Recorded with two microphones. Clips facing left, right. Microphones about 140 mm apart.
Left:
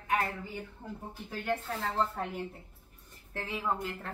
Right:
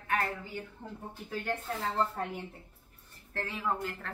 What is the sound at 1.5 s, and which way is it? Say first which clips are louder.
Speech: left 2 dB; 5° left (ahead or behind).